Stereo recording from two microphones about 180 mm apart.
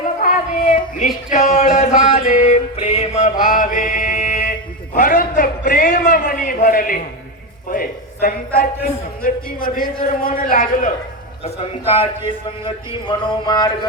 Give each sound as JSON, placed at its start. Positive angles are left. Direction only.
{"t": 0.0, "sound": "a sound", "side_deg": 50}
{"t": 1.3, "sound": "music", "side_deg": 45}
{"t": 3.4, "sound": "mantra", "side_deg": 45}
{"t": 4.9, "sound": "a sound", "side_deg": 50}
{"t": 7.7, "sound": "a man's voice", "side_deg": 50}
{"t": 12.6, "sound": "speech", "side_deg": 25}